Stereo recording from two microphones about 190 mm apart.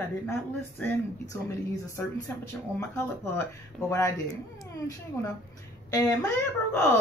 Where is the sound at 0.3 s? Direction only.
10° left (ahead or behind).